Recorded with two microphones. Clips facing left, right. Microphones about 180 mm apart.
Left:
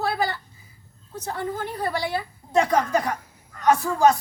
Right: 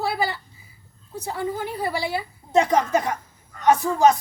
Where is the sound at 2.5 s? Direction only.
20° right (ahead or behind).